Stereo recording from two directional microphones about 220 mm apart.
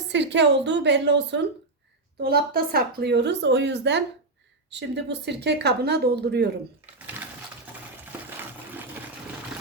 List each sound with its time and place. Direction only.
0.1 s speech: 55° right (ahead or behind)
8.1 s water: 10° right (ahead or behind)